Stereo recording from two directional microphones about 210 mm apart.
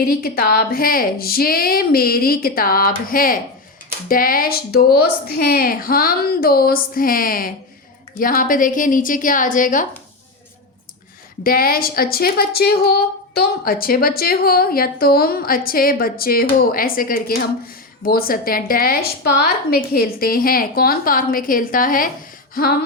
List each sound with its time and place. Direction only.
0.2 s a woman's voice: 45° left (ahead or behind)
11.4 s a woman's voice: 45° left (ahead or behind)